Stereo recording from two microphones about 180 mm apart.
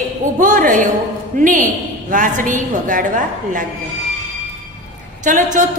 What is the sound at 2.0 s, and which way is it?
A woman's voice, 45° right (ahead or behind).